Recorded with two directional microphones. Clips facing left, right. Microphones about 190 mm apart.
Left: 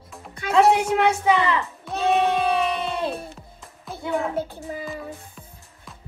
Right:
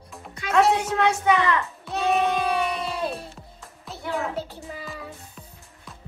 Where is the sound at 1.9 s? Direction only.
Centre (ahead or behind).